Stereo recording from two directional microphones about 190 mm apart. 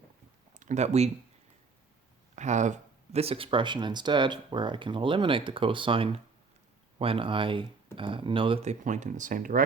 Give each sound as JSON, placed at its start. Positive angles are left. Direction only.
{"t": 0.5, "sound": "speech", "side_deg": -40}
{"t": 2.3, "sound": "speech", "side_deg": -40}
{"t": 8.8, "sound": "speech", "side_deg": -40}